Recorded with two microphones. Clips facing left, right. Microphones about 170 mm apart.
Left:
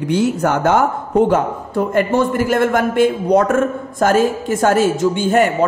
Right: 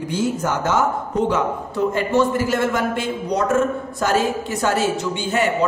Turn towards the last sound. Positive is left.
turn(degrees=50)  # may be behind; listen again after turning